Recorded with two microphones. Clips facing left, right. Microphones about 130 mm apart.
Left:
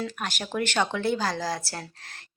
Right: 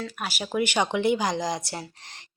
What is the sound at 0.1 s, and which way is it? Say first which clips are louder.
Speech: right 2 dB; 10° right (ahead or behind).